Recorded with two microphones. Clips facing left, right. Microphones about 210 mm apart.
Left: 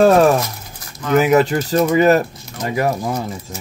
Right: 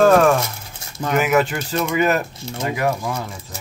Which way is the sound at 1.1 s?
35° left (ahead or behind).